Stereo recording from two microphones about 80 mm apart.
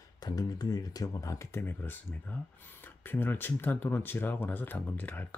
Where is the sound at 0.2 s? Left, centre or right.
Left.